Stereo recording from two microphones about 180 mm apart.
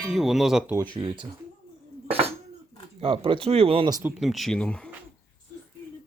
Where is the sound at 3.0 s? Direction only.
30° right (ahead or behind).